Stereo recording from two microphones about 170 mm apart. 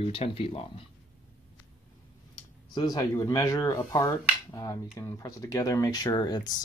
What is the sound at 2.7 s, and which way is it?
Speech, 25° left (ahead or behind).